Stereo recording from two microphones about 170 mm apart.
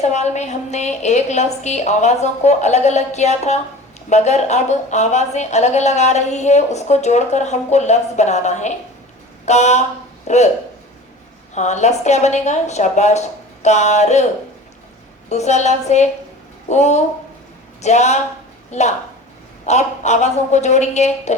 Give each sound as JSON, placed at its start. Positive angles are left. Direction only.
{"t": 0.0, "sound": "a woman's voice", "side_deg": 40}
{"t": 11.5, "sound": "a woman's voice", "side_deg": 45}
{"t": 15.3, "sound": "a woman's voice", "side_deg": 40}